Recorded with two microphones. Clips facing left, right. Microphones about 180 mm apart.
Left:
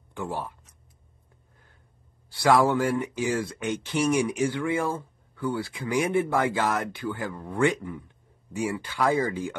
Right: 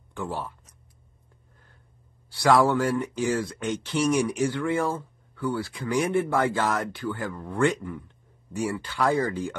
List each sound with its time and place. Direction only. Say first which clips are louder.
0.1 s speech: even; 10° left (ahead or behind)
2.4 s speech: right 1 dB; 15° left (ahead or behind)